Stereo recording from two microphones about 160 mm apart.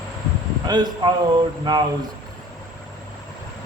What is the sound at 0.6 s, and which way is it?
Speech, 25° right (ahead or behind).